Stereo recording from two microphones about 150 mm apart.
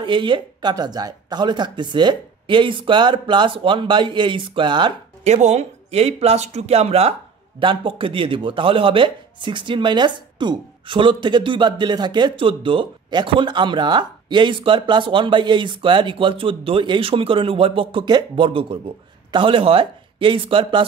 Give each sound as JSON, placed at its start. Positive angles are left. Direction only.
{"t": 0.0, "sound": "speech", "side_deg": -35}
{"t": 5.2, "sound": "speech", "side_deg": -50}